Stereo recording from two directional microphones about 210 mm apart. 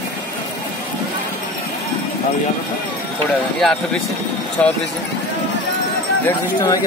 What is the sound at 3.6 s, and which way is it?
Speech, centre (ahead or behind).